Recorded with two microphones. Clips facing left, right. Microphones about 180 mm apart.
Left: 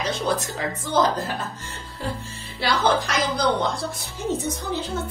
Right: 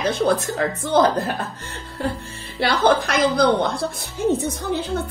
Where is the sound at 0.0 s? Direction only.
55° right (ahead or behind).